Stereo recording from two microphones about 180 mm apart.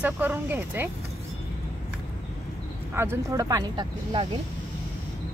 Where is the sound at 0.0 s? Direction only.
10° right (ahead or behind).